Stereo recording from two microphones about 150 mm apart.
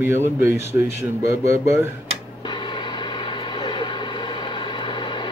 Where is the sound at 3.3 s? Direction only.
30° left (ahead or behind).